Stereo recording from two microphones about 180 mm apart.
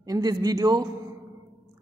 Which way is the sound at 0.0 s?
20° right (ahead or behind).